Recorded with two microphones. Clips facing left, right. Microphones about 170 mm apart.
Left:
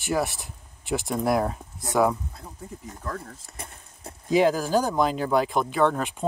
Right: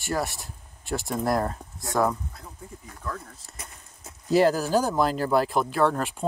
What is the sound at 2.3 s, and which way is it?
Speech, 25° left (ahead or behind).